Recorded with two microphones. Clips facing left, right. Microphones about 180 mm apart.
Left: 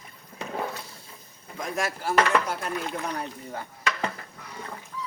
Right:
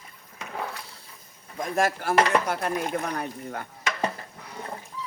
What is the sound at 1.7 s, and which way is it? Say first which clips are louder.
Speech: right 3 dB; 60° right (ahead or behind).